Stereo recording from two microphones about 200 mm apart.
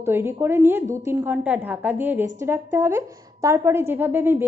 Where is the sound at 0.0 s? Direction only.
10° right (ahead or behind).